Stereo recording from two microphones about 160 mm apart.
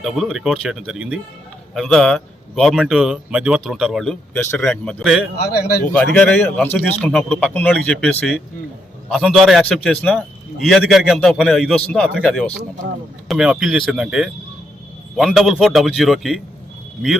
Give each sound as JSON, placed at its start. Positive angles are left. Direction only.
{"t": 0.0, "sound": "a man's voice", "side_deg": 0}
{"t": 5.4, "sound": "speech", "side_deg": 75}
{"t": 5.9, "sound": "a man's voice", "side_deg": 5}